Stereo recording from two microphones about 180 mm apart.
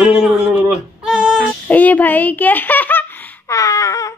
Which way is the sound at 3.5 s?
20° left (ahead or behind).